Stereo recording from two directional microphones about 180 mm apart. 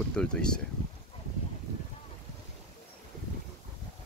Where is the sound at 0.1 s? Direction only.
5° left (ahead or behind).